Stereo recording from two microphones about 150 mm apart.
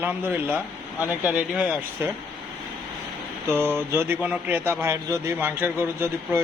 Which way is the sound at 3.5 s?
15° right (ahead or behind).